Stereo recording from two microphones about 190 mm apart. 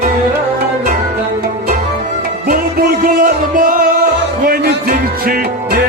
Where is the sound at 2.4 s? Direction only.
50° right (ahead or behind).